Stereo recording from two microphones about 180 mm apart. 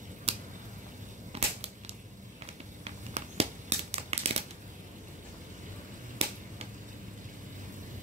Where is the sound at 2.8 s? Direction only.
35° right (ahead or behind).